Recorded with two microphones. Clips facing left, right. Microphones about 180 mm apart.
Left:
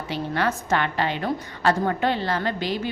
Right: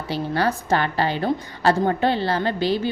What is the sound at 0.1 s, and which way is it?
A woman's voice, 35° right (ahead or behind).